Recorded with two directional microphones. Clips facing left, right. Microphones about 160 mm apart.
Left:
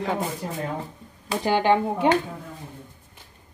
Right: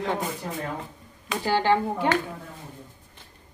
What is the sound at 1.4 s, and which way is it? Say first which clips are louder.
Speech: left 2 dB; 20° left (ahead or behind).